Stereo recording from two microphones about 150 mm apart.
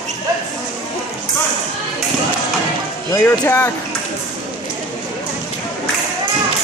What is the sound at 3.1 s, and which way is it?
Speech, 15° left (ahead or behind).